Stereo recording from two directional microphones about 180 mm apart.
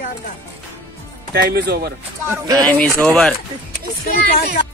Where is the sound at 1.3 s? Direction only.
65° right (ahead or behind).